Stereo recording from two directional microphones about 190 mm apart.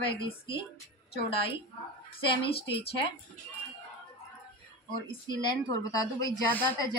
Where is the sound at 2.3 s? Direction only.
25° left (ahead or behind).